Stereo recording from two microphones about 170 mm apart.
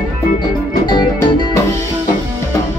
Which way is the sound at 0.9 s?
25° left (ahead or behind).